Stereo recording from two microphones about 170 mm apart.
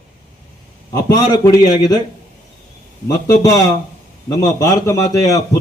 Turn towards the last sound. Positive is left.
turn(degrees=20)  # may be behind; listen again after turning